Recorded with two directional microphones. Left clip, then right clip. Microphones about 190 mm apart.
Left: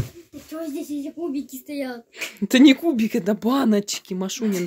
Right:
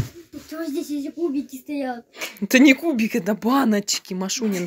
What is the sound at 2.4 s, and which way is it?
Speech, 25° left (ahead or behind).